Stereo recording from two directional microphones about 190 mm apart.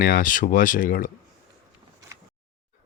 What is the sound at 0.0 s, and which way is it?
Speech, 45° left (ahead or behind).